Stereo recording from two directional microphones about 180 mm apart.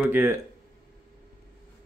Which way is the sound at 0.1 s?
10° right (ahead or behind).